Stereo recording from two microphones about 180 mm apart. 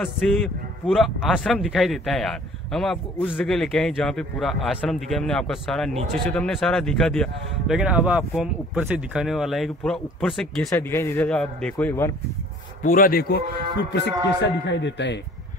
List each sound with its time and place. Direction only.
0.0 s a man's voice: centre (ahead or behind)
10.7 s a man's voice: 15° left (ahead or behind)
12.8 s a man's voice: 50° left (ahead or behind)
14.4 s speech: 75° left (ahead or behind)